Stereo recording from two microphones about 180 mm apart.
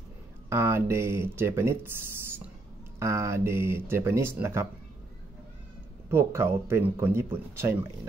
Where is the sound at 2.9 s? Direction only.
15° right (ahead or behind).